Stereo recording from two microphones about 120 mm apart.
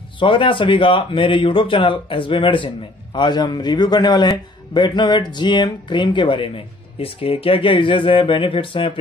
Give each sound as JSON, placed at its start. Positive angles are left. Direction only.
{"t": 0.2, "sound": "a man's voice", "side_deg": 45}